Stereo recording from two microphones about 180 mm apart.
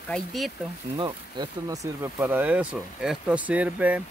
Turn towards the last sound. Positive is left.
turn(degrees=-10)  # may be behind; listen again after turning